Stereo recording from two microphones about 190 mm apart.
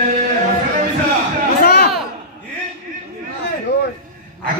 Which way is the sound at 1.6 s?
55° left (ahead or behind).